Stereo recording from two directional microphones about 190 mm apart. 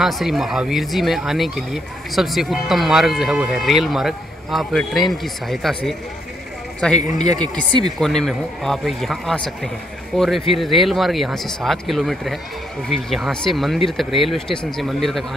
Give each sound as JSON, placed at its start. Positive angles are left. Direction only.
{"t": 0.0, "sound": "speech", "side_deg": 0}
{"t": 7.2, "sound": "speech", "side_deg": -20}
{"t": 8.0, "sound": "speech", "side_deg": 0}